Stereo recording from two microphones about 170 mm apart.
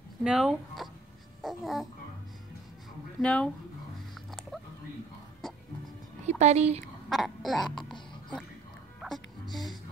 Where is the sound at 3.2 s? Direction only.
5° left (ahead or behind).